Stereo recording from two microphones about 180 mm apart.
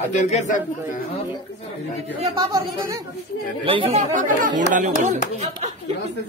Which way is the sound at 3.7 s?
30° right (ahead or behind).